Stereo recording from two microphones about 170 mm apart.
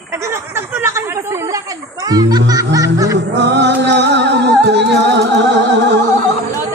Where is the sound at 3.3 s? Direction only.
90° right.